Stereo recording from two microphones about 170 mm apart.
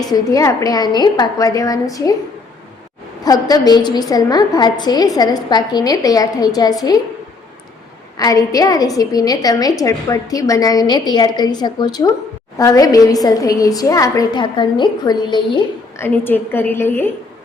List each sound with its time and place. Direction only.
0.0 s a woman's voice: 20° left (ahead or behind)
3.2 s a woman's voice: 20° left (ahead or behind)
8.1 s a woman's voice: 20° left (ahead or behind)
16.0 s a woman's voice: 10° left (ahead or behind)